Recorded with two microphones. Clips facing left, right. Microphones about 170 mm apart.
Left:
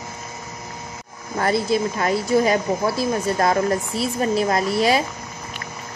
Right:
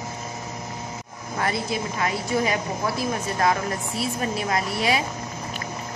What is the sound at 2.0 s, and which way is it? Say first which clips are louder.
A woman's voice: left 4 dB; 40° left (ahead or behind).